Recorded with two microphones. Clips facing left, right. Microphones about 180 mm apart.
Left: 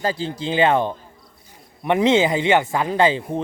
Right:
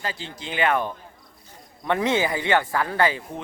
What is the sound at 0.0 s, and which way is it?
Speech, 35° left (ahead or behind).